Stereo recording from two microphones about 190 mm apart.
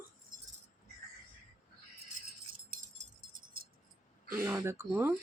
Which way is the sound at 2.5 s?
50° right (ahead or behind).